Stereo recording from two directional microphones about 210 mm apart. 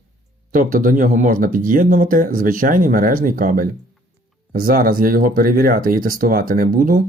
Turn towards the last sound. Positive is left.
turn(degrees=-45)  # may be behind; listen again after turning